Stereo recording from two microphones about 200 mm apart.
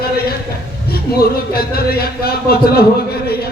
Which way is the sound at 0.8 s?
50° left (ahead or behind).